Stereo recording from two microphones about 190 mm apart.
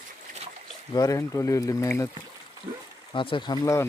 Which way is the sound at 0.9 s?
15° left (ahead or behind).